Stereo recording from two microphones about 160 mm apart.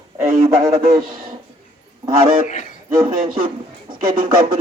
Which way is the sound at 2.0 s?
35° right (ahead or behind).